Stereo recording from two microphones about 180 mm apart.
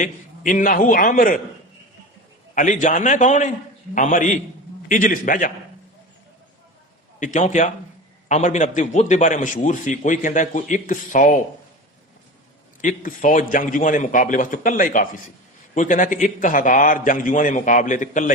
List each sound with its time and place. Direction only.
0.0 s a man's voice: 45° left (ahead or behind)
2.6 s a man's voice: 45° left (ahead or behind)
7.2 s a man's voice: 40° left (ahead or behind)
12.8 s a man's voice: 50° left (ahead or behind)